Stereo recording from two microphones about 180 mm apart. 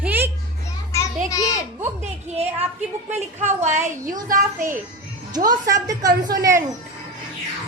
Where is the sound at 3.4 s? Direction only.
40° right (ahead or behind).